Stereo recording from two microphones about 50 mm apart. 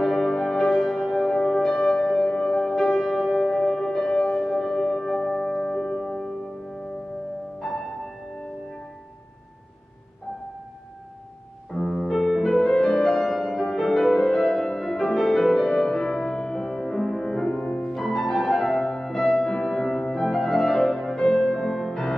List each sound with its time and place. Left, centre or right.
0.0 s music: centre
3.5 s music: centre
7.6 s music: centre
11.7 s music: centre
17.6 s music: left
17.9 s music: centre